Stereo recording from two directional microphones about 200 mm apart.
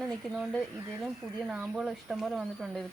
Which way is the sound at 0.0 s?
5° left (ahead or behind).